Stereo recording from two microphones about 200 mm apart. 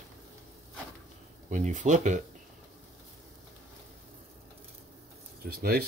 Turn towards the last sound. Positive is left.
turn(degrees=-50)  # may be behind; listen again after turning